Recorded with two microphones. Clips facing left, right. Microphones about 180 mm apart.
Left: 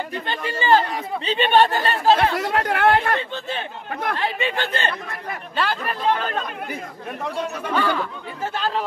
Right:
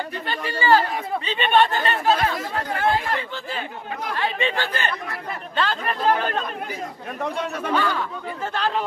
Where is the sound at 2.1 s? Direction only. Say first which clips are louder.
Left 4 dB; 70° left (ahead or behind).